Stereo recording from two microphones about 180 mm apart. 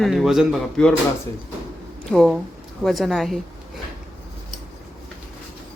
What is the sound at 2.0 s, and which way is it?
Speech, 5° left (ahead or behind).